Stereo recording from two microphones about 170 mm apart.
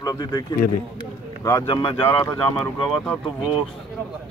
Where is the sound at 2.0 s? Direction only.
15° left (ahead or behind).